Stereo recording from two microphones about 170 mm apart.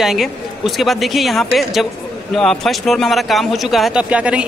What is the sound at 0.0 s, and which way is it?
Speech, centre (ahead or behind).